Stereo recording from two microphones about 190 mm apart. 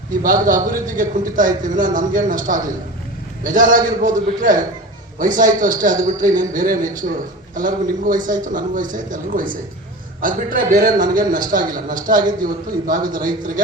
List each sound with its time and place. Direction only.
0.2 s a man's voice: 45° right (ahead or behind)